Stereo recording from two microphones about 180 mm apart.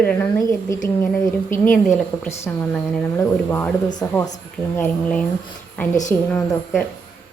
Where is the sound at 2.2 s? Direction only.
15° left (ahead or behind).